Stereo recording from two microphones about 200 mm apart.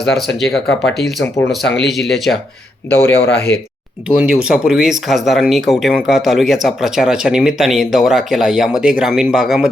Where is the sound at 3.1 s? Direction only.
55° left (ahead or behind).